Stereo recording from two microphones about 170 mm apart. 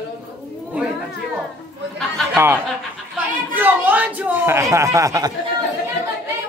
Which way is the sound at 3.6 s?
10° right (ahead or behind).